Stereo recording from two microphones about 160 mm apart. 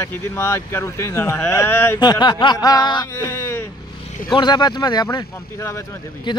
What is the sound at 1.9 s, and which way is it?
Speech, 25° left (ahead or behind).